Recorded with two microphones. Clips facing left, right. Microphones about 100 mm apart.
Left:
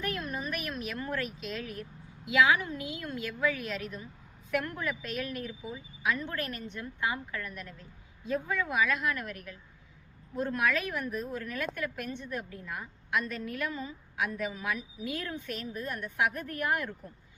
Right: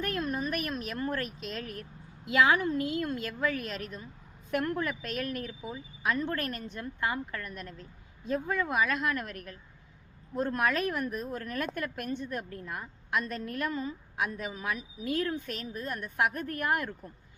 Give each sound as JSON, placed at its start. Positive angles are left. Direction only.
{"t": 0.0, "sound": "a woman's voice", "side_deg": -45}